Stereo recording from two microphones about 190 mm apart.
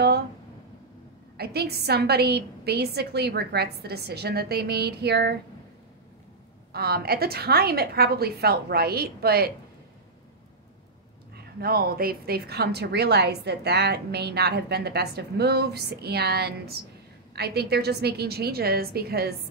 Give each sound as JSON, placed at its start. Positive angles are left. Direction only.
{"t": 1.3, "sound": "a woman's voice", "side_deg": -55}
{"t": 6.7, "sound": "a woman's voice", "side_deg": -55}
{"t": 11.3, "sound": "a woman's voice", "side_deg": -50}